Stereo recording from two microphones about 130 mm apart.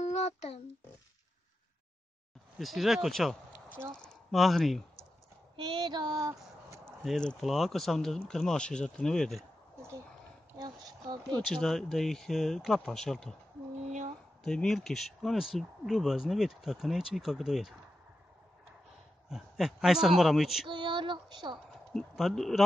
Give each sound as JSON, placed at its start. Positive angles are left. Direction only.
{"t": 0.0, "sound": "a sound", "side_deg": 60}
{"t": 2.6, "sound": "speech", "side_deg": 0}
{"t": 5.6, "sound": "child singing", "side_deg": -35}
{"t": 6.9, "sound": "speech", "side_deg": 5}
{"t": 9.8, "sound": "a sound", "side_deg": -20}
{"t": 10.6, "sound": "child singing", "side_deg": -35}
{"t": 11.3, "sound": "speech", "side_deg": 5}
{"t": 13.8, "sound": "a sound", "side_deg": -65}
{"t": 14.4, "sound": "speech", "side_deg": 5}
{"t": 19.2, "sound": "speech", "side_deg": -5}
{"t": 20.6, "sound": "female singing", "side_deg": -40}
{"t": 21.9, "sound": "speech", "side_deg": 0}